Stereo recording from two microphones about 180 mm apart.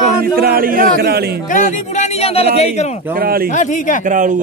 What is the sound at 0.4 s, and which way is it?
Speech, 55° right (ahead or behind).